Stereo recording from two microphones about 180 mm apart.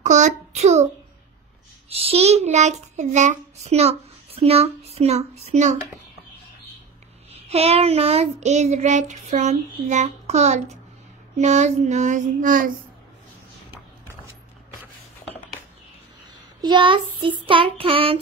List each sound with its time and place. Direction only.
0.0 s a child's voice: 40° right (ahead or behind)
1.9 s child singing: 30° right (ahead or behind)
7.4 s child singing: 35° right (ahead or behind)
16.6 s child singing: 25° right (ahead or behind)